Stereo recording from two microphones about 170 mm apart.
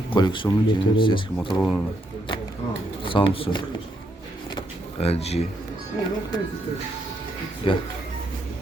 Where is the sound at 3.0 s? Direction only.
30° left (ahead or behind).